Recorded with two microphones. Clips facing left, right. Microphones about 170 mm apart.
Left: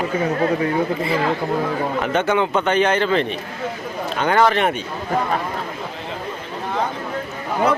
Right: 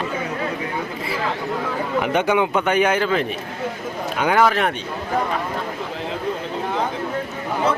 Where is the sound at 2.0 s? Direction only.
10° right (ahead or behind).